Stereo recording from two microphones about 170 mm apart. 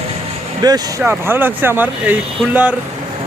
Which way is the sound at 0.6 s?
20° right (ahead or behind).